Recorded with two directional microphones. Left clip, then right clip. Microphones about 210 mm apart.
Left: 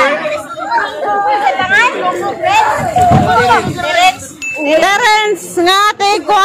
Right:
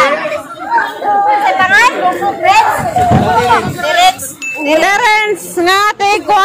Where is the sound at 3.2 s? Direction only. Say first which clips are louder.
Even; 50° left (ahead or behind).